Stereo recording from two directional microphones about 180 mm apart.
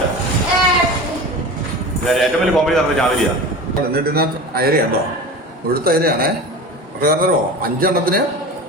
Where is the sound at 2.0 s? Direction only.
Centre (ahead or behind).